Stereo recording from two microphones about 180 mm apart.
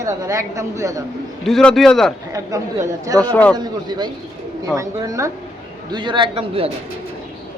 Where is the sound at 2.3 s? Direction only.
20° right (ahead or behind).